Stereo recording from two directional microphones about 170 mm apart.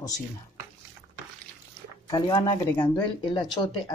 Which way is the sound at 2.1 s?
25° left (ahead or behind).